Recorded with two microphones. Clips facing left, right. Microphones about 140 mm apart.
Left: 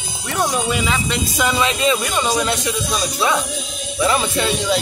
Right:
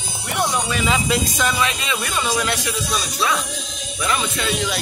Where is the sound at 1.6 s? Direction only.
30° left (ahead or behind).